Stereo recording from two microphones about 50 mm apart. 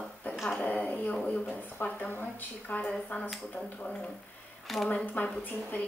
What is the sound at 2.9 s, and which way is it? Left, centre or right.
Speech, left.